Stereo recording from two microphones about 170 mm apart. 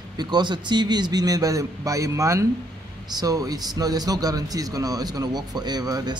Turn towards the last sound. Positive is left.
turn(degrees=-25)  # may be behind; listen again after turning